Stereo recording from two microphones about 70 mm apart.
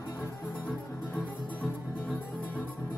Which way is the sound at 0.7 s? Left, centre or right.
Centre.